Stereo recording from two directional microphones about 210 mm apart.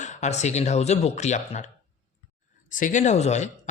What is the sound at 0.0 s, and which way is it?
A man's voice, 35° left (ahead or behind).